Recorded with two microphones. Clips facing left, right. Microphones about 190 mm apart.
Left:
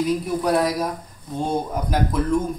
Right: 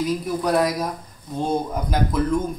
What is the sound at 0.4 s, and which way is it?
Speech, centre (ahead or behind).